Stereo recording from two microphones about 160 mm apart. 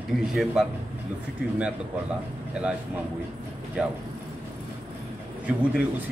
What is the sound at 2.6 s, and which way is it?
Speech, 5° right (ahead or behind).